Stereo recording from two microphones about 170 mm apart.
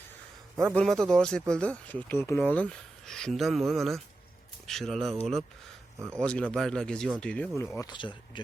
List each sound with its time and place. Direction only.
0.7 s speech: 5° left (ahead or behind)
7.8 s speech: 25° left (ahead or behind)